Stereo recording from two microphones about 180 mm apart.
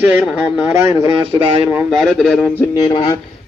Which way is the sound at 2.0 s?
5° left (ahead or behind).